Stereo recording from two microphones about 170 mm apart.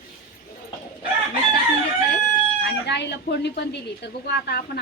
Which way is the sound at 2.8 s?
85° left.